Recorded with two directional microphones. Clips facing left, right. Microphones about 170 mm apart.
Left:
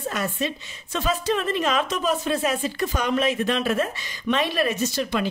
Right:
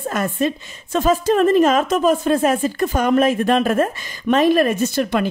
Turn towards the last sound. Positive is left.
turn(degrees=-55)  # may be behind; listen again after turning